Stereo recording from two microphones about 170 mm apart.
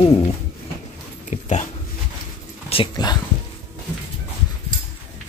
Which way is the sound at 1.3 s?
45° left (ahead or behind).